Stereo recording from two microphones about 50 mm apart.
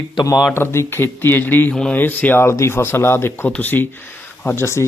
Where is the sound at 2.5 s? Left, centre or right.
Left.